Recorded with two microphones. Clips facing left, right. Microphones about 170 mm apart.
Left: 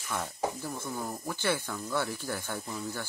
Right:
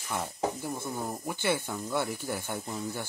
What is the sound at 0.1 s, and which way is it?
Speech, 20° right (ahead or behind).